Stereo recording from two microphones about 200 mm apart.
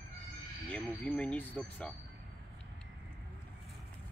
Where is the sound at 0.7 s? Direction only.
5° left (ahead or behind).